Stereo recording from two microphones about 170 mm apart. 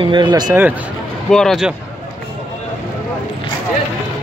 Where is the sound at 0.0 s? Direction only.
25° right (ahead or behind).